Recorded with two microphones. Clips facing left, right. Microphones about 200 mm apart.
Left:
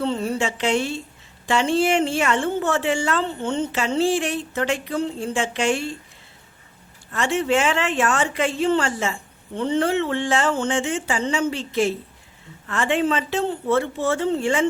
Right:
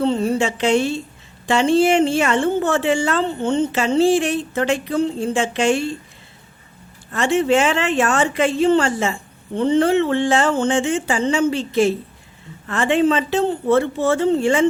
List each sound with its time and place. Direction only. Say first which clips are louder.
0.0 s a woman's voice: right 5 dB; 25° right (ahead or behind)
7.3 s a woman's voice: right 4 dB; 25° right (ahead or behind)
12.9 s a woman's voice: right 5 dB; 25° right (ahead or behind)